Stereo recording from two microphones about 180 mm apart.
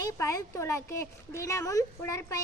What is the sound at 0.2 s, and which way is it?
Speech, 20° left (ahead or behind).